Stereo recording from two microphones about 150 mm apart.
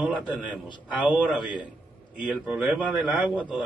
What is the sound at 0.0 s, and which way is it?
A man's voice, 10° right (ahead or behind).